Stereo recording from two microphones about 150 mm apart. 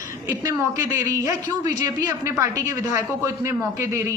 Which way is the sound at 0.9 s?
20° right (ahead or behind).